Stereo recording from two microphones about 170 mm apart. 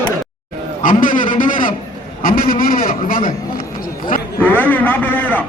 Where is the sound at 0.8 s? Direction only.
50° left (ahead or behind).